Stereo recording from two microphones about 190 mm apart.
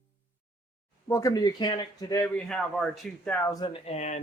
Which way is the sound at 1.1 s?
15° left (ahead or behind).